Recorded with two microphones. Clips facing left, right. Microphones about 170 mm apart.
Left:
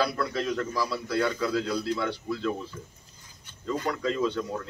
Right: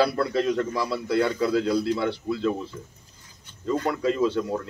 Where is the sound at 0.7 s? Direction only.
60° right (ahead or behind).